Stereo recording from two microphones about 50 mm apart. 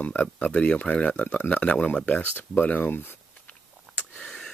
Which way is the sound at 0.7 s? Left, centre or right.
Left.